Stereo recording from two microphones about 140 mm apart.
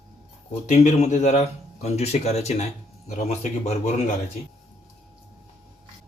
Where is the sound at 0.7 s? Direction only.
55° left (ahead or behind).